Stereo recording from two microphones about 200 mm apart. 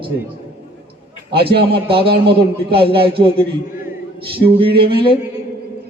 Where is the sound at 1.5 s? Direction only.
25° right (ahead or behind).